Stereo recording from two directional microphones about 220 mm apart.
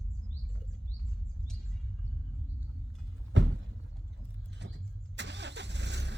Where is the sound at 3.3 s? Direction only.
55° right (ahead or behind).